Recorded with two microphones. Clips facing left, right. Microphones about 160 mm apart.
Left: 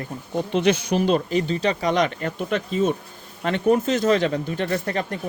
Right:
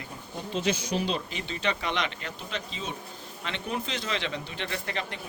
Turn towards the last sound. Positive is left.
turn(degrees=45)  # may be behind; listen again after turning